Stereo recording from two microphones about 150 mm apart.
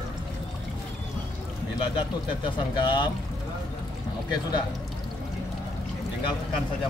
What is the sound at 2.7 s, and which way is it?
Speech, 30° left (ahead or behind).